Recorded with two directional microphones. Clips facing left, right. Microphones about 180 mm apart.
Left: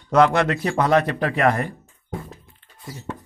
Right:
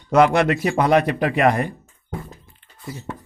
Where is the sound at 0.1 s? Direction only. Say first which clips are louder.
Right 2 dB; 10° right (ahead or behind).